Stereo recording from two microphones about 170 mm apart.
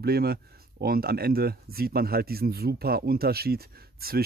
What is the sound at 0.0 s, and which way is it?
Speech, 65° right (ahead or behind).